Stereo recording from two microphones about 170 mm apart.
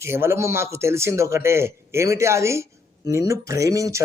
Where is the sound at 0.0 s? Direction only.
15° right (ahead or behind).